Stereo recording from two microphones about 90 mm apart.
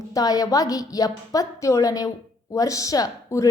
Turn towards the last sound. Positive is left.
turn(degrees=40)  # may be behind; listen again after turning